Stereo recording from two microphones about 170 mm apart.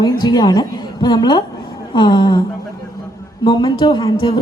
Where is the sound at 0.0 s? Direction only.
25° left (ahead or behind).